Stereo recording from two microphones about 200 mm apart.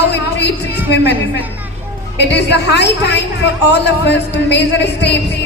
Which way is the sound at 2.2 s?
60° left (ahead or behind).